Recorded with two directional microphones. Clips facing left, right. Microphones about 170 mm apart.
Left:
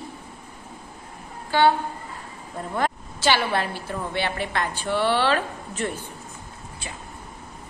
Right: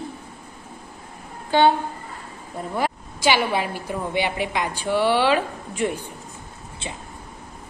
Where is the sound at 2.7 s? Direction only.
10° right (ahead or behind).